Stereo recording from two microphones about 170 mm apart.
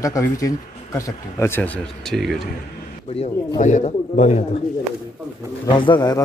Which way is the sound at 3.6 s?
45° left (ahead or behind).